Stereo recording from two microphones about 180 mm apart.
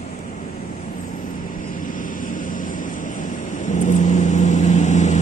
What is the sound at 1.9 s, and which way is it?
Vehicle, 50° left (ahead or behind).